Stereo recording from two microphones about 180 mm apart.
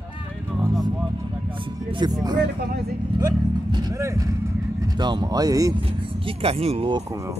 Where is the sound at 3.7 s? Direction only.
20° right (ahead or behind).